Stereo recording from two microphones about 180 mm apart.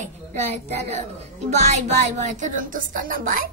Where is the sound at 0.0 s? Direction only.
35° right (ahead or behind).